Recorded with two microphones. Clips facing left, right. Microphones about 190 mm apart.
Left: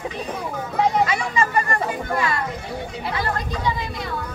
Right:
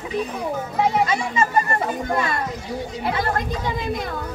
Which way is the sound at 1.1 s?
25° right (ahead or behind).